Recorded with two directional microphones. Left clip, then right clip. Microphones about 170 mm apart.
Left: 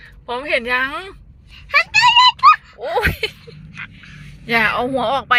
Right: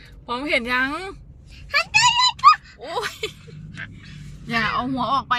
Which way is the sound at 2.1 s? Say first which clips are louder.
Left 6 dB; 20° left (ahead or behind).